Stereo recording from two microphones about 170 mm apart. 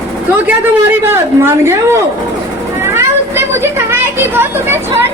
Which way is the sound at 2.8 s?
15° right (ahead or behind).